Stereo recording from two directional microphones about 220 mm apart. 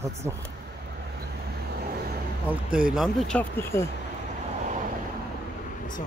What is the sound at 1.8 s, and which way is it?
Vehicle, 45° right (ahead or behind).